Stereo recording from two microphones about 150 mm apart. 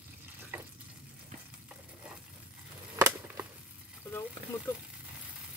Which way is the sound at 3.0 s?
15° right (ahead or behind).